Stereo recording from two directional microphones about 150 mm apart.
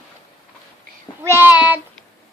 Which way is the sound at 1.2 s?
15° right (ahead or behind).